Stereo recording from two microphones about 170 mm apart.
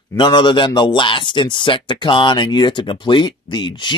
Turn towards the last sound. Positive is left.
turn(degrees=25)  # may be behind; listen again after turning